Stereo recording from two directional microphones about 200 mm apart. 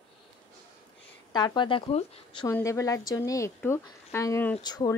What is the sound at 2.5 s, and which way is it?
A woman's voice, 15° left (ahead or behind).